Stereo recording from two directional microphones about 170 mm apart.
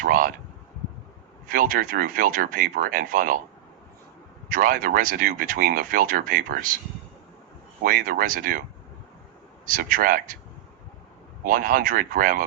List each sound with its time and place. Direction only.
0.0 s a sound: 55° right (ahead or behind)
1.5 s speech: 55° right (ahead or behind)
4.4 s speech: 55° right (ahead or behind)
7.9 s speech: 55° right (ahead or behind)
9.6 s speech: 55° right (ahead or behind)
11.4 s speech: 55° right (ahead or behind)